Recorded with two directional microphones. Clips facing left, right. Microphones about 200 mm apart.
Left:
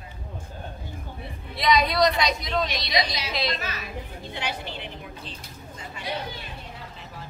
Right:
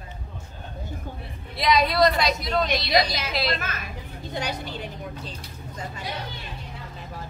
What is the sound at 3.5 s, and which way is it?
A woman's voice, 50° right (ahead or behind).